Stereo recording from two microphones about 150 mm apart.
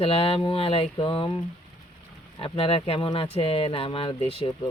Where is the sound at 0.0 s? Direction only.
40° left (ahead or behind).